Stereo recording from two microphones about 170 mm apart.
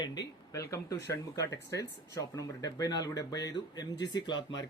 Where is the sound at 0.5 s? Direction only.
20° left (ahead or behind).